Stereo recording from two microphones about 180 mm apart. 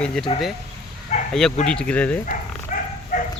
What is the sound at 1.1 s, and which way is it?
Bow-wow, 40° left (ahead or behind).